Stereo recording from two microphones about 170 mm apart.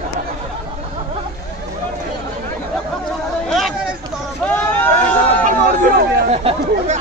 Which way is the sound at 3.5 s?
Centre (ahead or behind).